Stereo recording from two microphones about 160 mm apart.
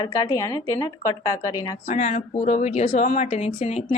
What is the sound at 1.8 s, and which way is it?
A woman's voice, 45° left (ahead or behind).